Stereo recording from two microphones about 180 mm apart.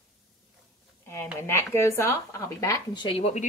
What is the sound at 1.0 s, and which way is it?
Speech, 15° left (ahead or behind).